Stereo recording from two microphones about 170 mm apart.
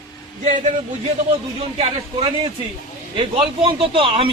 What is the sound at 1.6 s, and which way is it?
Speech, 35° right (ahead or behind).